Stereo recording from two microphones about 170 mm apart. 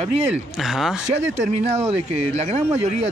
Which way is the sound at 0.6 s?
Centre (ahead or behind).